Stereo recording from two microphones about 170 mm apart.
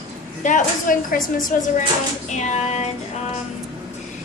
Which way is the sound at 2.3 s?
45° left (ahead or behind).